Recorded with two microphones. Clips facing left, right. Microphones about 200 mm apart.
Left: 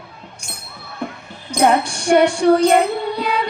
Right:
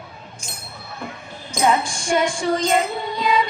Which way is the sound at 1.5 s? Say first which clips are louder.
Left 4 dB; 65° left (ahead or behind).